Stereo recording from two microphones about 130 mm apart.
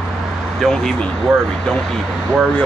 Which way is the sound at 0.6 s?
5° left (ahead or behind).